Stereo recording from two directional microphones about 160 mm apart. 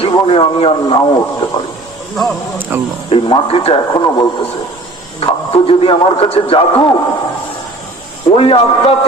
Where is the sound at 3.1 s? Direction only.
40° left (ahead or behind).